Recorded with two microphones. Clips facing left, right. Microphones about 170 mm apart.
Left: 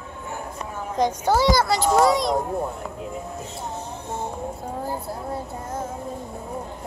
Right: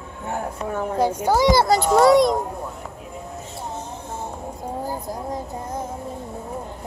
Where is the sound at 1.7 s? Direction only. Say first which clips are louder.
Right 4 dB; 60° right (ahead or behind).